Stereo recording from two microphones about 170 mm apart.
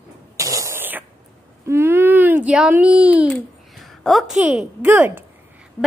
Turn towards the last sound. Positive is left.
turn(degrees=-10)  # may be behind; listen again after turning